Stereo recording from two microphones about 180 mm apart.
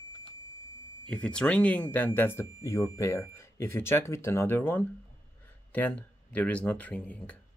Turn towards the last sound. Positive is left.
turn(degrees=5)  # may be behind; listen again after turning